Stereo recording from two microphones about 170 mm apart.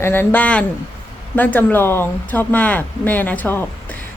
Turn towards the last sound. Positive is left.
turn(degrees=10)  # may be behind; listen again after turning